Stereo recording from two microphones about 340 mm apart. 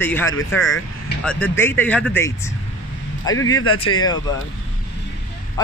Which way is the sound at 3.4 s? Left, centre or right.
Left.